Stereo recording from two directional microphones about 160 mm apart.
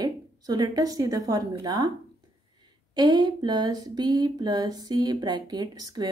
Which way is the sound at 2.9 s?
25° right (ahead or behind).